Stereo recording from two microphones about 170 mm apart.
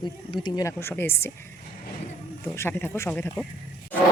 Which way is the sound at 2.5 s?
15° left (ahead or behind).